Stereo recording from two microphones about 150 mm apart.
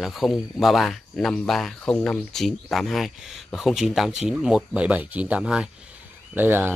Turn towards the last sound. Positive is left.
turn(degrees=-15)  # may be behind; listen again after turning